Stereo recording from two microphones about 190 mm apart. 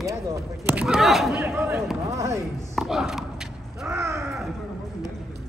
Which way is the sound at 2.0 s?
15° right (ahead or behind).